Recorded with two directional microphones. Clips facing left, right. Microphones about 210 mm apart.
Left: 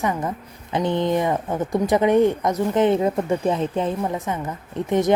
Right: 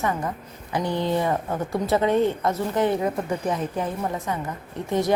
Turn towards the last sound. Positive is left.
turn(degrees=20)  # may be behind; listen again after turning